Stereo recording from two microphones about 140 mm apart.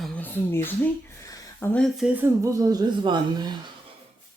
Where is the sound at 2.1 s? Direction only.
20° right (ahead or behind).